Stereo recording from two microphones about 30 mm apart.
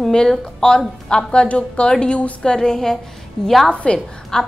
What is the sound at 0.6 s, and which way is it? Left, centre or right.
A woman's voice, left.